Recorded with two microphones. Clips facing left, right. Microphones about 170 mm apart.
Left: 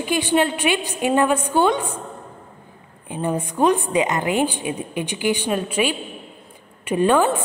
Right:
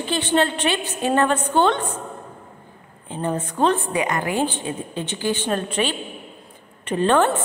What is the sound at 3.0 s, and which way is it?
A woman's voice, 15° left (ahead or behind).